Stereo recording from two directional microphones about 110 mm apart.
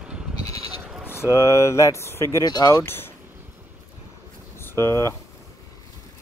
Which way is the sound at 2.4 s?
40° left (ahead or behind).